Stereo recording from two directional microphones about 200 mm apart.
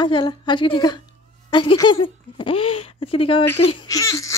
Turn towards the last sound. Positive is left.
turn(degrees=15)  # may be behind; listen again after turning